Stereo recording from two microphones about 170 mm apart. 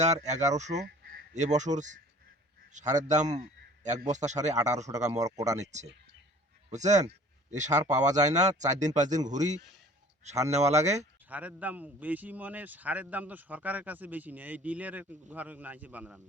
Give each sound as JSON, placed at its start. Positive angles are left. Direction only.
{"t": 0.0, "sound": "speech", "side_deg": -40}
{"t": 0.9, "sound": "a sound", "side_deg": -70}
{"t": 1.3, "sound": "speech", "side_deg": -45}
{"t": 5.2, "sound": "speech", "side_deg": -20}
{"t": 6.7, "sound": "speech", "side_deg": -45}
{"t": 10.5, "sound": "speech", "side_deg": -40}
{"t": 11.3, "sound": "a man's voice", "side_deg": -10}